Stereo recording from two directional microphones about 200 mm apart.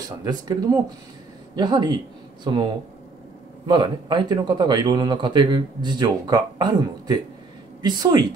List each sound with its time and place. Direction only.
0.2 s a man's voice: 20° right (ahead or behind)